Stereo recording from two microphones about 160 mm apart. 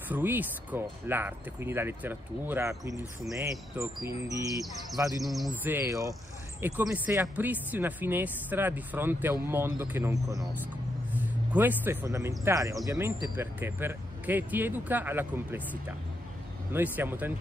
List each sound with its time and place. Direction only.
0.1 s speech: 10° right (ahead or behind)
5.2 s bird: centre (ahead or behind)
5.6 s speech: 10° right (ahead or behind)